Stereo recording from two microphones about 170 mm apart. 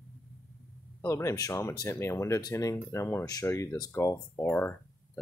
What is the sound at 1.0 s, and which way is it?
Speech, 15° left (ahead or behind).